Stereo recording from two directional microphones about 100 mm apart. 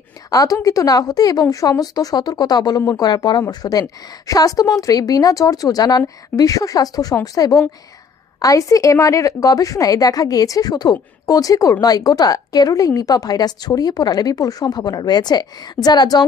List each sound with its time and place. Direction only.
0.3 s a woman's voice: 35° left (ahead or behind)